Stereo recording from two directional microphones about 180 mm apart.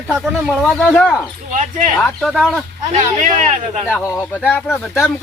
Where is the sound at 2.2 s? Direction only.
Centre (ahead or behind).